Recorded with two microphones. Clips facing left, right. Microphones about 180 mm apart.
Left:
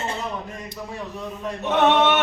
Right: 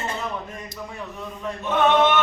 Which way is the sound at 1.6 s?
70° left (ahead or behind).